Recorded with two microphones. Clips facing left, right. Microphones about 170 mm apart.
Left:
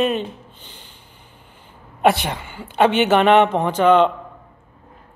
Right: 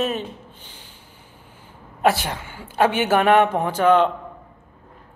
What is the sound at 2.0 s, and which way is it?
A woman's voice, 60° left (ahead or behind).